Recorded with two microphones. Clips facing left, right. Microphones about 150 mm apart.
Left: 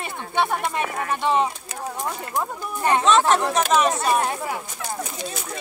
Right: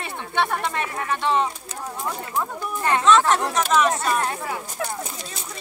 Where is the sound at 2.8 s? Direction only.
15° left (ahead or behind).